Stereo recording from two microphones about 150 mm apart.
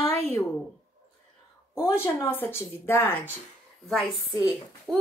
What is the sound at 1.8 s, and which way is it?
Speech, 20° left (ahead or behind).